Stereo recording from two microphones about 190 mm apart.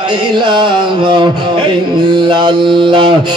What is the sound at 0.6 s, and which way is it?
Mantra, 25° right (ahead or behind).